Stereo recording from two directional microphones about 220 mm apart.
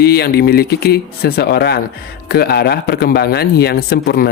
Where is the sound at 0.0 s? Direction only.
45° left (ahead or behind).